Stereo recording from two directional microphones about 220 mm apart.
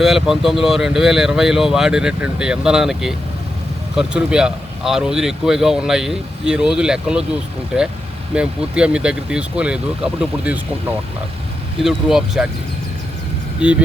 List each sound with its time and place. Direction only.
0.0 s speech: centre (ahead or behind)
8.4 s speech: 5° right (ahead or behind)
11.8 s speech: centre (ahead or behind)
13.6 s speech: 5° right (ahead or behind)